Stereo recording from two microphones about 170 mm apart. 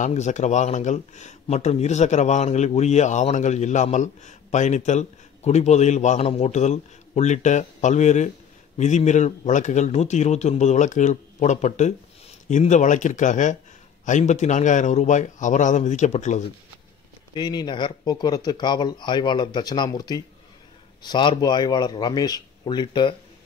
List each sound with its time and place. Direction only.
0.0 s speech: 45° left (ahead or behind)
17.3 s speech: 25° left (ahead or behind)